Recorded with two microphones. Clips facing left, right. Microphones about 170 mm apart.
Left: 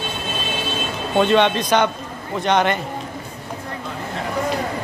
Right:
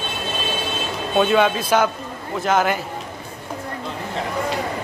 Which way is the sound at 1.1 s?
5° right (ahead or behind).